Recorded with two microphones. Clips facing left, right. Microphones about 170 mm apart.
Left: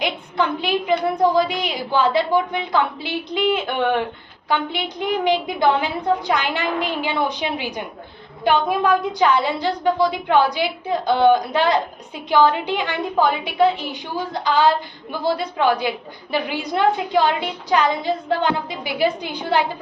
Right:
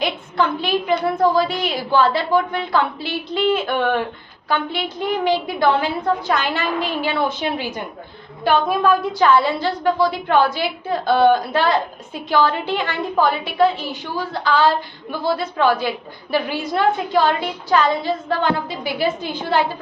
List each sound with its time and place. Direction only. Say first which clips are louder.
0.0 s a woman's voice: right 1 dB; 15° left (ahead or behind)